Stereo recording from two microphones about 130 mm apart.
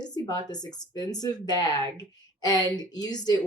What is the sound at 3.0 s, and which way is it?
Speech, 30° left (ahead or behind).